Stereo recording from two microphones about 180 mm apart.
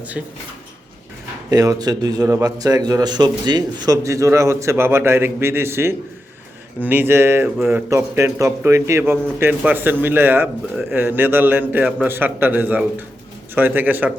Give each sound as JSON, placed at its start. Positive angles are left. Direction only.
{"t": 1.5, "sound": "speech", "side_deg": -20}